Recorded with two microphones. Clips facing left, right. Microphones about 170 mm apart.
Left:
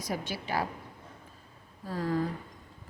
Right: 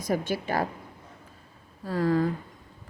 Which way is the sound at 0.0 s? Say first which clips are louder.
Right 7 dB; 50° right (ahead or behind).